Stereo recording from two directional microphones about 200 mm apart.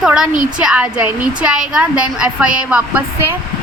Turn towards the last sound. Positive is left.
turn(degrees=-5)  # may be behind; listen again after turning